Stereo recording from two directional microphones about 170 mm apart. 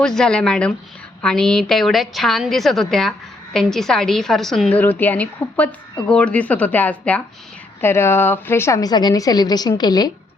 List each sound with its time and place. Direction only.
0.0 s a woman's voice: 5° left (ahead or behind); by 10.1 s 25° left (ahead or behind)